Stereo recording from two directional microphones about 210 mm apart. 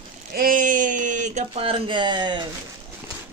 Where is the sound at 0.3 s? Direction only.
40° right (ahead or behind); by 2.4 s 20° right (ahead or behind).